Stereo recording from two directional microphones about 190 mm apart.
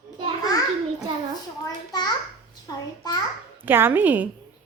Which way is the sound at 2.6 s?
20° left (ahead or behind).